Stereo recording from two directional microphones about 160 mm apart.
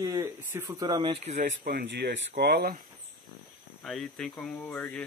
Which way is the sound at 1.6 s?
80° right.